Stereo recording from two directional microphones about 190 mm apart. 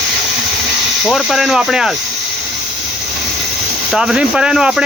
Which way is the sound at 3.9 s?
5° right (ahead or behind).